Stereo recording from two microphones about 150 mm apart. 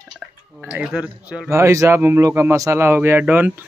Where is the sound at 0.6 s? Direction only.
10° right (ahead or behind).